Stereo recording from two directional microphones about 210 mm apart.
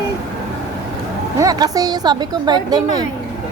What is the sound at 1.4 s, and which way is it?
Speech, 20° right (ahead or behind).